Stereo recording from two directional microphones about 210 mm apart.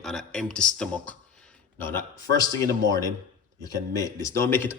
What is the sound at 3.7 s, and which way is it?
Speech, 15° left (ahead or behind).